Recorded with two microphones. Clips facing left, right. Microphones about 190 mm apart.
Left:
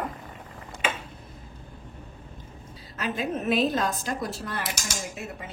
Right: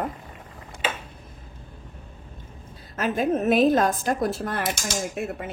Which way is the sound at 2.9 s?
50° right (ahead or behind).